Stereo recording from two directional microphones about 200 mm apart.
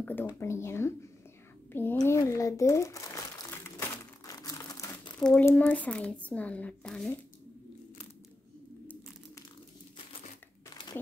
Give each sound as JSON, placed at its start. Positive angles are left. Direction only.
{"t": 0.0, "sound": "speech", "side_deg": 10}
{"t": 4.3, "sound": "crumpling", "side_deg": 15}
{"t": 5.2, "sound": "speech", "side_deg": 5}
{"t": 10.7, "sound": "crumpling", "side_deg": 20}